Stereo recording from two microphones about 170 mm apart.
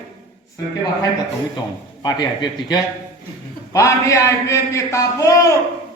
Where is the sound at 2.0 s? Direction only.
25° left (ahead or behind).